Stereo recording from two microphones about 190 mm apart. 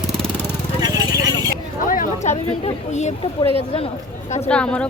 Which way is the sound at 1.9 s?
40° left (ahead or behind).